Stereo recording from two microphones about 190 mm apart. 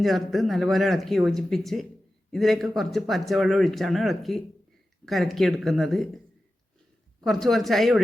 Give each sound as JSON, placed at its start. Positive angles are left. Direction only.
{"t": 0.0, "sound": "speech", "side_deg": 0}
{"t": 7.3, "sound": "speech", "side_deg": 0}